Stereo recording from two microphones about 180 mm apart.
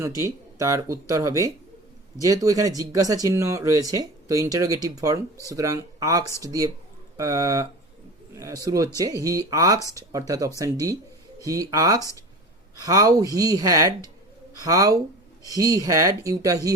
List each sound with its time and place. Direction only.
0.2 s speech: 15° right (ahead or behind)